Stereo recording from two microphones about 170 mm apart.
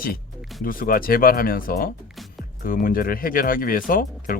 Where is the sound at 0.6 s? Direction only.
55° left (ahead or behind).